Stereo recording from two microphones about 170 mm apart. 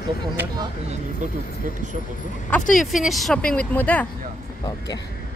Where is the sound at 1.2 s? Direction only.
45° right (ahead or behind).